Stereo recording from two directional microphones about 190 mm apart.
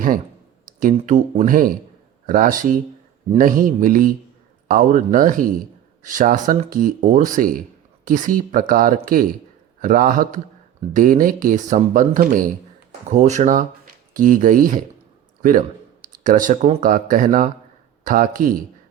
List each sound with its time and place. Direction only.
0.8 s speech: 45° right (ahead or behind)